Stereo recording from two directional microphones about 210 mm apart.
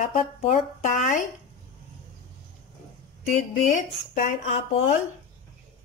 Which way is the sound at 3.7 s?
35° left (ahead or behind).